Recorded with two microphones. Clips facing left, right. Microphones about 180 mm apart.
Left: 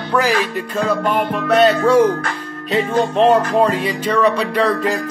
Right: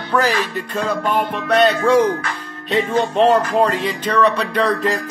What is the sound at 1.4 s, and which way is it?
Music, 5° left (ahead or behind).